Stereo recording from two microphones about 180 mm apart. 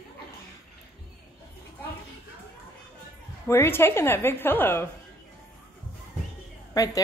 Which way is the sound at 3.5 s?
15° left (ahead or behind).